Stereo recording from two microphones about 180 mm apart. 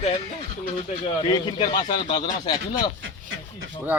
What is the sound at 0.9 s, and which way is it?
A man's voice, 30° left (ahead or behind).